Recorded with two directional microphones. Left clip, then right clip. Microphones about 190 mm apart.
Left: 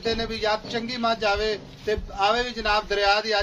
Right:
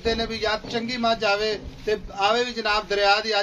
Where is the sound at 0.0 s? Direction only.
25° right (ahead or behind).